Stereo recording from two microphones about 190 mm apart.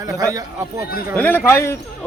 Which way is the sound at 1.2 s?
10° left (ahead or behind).